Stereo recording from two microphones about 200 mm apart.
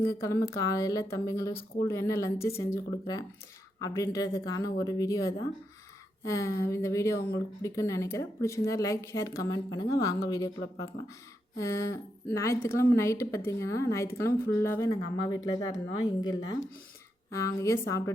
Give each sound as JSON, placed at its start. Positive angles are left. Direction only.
{"t": 0.0, "sound": "a woman's voice", "side_deg": 15}
{"t": 7.2, "sound": "speech", "side_deg": 50}
{"t": 7.6, "sound": "a woman's voice", "side_deg": 15}